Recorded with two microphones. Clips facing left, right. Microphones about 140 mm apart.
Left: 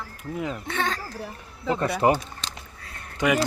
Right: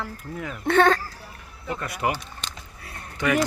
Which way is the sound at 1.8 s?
30° left (ahead or behind).